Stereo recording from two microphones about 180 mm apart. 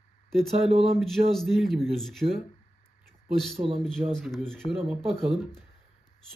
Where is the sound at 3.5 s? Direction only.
30° right (ahead or behind).